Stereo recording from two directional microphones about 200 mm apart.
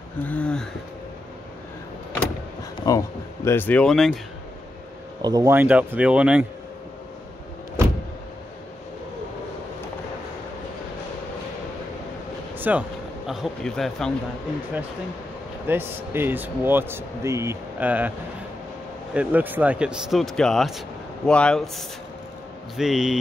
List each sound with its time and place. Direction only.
0.2 s speech: 5° left (ahead or behind)
2.8 s speech: 15° left (ahead or behind)
5.2 s speech: 15° right (ahead or behind)
12.5 s vehicle: 10° right (ahead or behind)
13.3 s speech: centre (ahead or behind)
15.6 s speech: 10° right (ahead or behind)
19.1 s speech: 10° right (ahead or behind)